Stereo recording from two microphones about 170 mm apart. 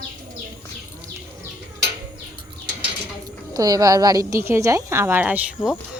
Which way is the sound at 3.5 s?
20° right (ahead or behind).